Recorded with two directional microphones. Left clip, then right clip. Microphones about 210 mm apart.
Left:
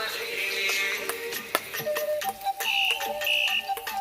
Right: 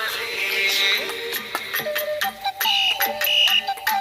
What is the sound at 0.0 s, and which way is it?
Music, 35° right (ahead or behind).